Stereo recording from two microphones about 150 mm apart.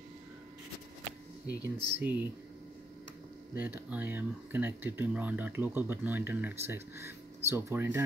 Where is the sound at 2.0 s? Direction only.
10° right (ahead or behind).